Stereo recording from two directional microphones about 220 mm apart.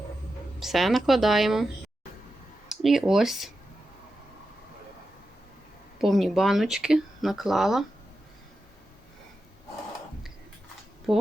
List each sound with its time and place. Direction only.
0.6 s speech: centre (ahead or behind)
2.6 s speech: centre (ahead or behind)
6.0 s speech: centre (ahead or behind)
11.1 s speech: centre (ahead or behind)